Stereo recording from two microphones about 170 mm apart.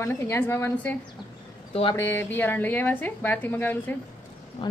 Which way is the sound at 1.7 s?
30° left (ahead or behind).